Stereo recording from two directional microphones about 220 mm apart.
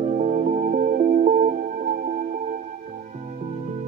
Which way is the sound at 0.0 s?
35° right (ahead or behind).